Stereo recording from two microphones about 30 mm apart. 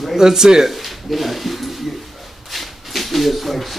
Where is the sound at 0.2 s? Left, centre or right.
Centre.